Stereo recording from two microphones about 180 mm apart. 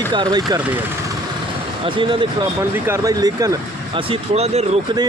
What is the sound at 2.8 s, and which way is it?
Speech, 15° right (ahead or behind).